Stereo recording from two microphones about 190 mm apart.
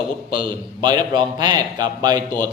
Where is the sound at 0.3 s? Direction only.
25° right (ahead or behind).